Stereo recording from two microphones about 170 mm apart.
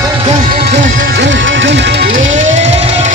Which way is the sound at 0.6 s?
65° right (ahead or behind).